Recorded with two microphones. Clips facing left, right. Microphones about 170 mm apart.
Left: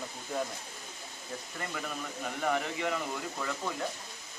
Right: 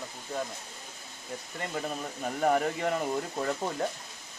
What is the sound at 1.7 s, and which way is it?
Speech, 35° right (ahead or behind).